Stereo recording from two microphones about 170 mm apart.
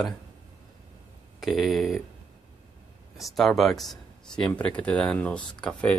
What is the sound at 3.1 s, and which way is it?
Speech, centre (ahead or behind).